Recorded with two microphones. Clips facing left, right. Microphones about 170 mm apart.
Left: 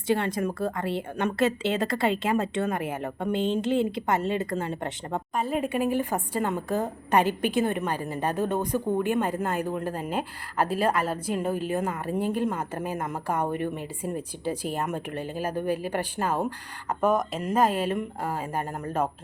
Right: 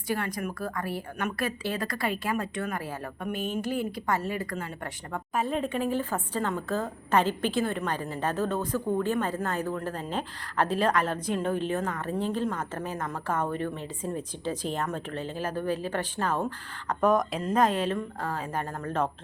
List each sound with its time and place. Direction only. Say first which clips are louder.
0.1 s a woman's voice: left 5 dB; 25° left (ahead or behind)
5.3 s speech: right 1 dB; centre (ahead or behind)
5.5 s a woman's voice: left 5 dB; 10° left (ahead or behind)